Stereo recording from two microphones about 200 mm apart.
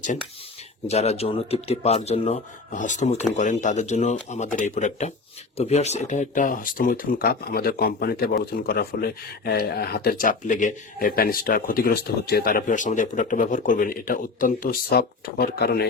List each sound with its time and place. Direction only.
0.9 s a man's voice: 35° left (ahead or behind); by 15.9 s 55° left (ahead or behind)